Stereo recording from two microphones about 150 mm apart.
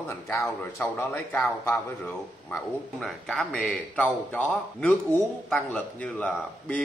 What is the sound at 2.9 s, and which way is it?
A man's voice, centre (ahead or behind).